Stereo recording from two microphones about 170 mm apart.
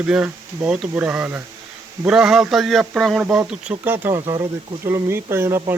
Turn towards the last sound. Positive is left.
turn(degrees=-15)  # may be behind; listen again after turning